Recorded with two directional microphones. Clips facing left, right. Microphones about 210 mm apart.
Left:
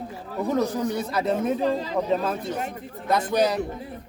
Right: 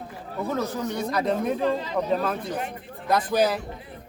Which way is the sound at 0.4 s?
15° left (ahead or behind).